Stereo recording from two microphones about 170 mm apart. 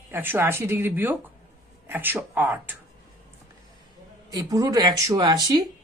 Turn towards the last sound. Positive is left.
turn(degrees=-25)  # may be behind; listen again after turning